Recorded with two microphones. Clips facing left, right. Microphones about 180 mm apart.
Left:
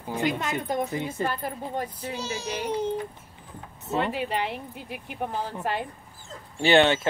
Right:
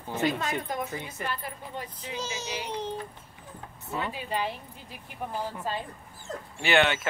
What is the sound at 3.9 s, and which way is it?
Speech, 70° left (ahead or behind).